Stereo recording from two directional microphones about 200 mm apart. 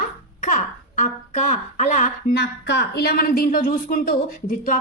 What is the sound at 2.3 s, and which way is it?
A woman's voice, 55° left (ahead or behind).